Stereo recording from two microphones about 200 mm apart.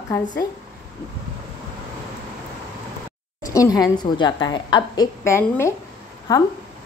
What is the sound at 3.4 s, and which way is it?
A woman's voice, 15° left (ahead or behind).